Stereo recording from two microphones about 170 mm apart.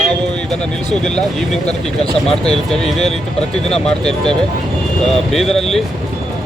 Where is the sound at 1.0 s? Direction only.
Centre (ahead or behind).